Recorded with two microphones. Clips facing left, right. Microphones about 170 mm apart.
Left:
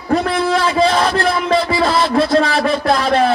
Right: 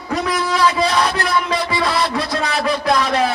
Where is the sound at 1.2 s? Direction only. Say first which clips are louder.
Left 4 dB; 30° left (ahead or behind).